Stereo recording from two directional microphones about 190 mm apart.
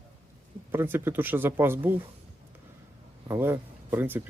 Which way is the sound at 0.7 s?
10° right (ahead or behind).